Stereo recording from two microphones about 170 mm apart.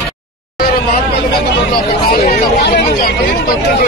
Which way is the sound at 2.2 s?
70° left (ahead or behind).